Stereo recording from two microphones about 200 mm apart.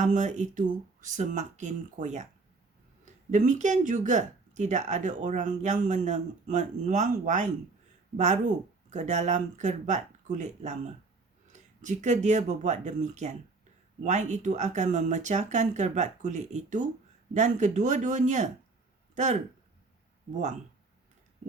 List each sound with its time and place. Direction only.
0.0 s speech: 35° right (ahead or behind)
3.2 s speech: 35° right (ahead or behind)